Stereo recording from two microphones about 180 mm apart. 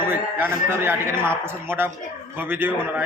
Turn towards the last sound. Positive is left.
turn(degrees=-10)  # may be behind; listen again after turning